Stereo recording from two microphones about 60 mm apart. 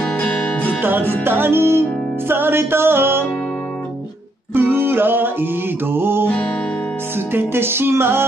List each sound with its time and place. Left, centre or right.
0.0 s music: left
0.8 s music: right
4.6 s music: right
7.3 s music: right